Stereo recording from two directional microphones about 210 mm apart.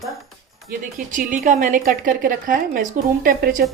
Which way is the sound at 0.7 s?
40° right (ahead or behind).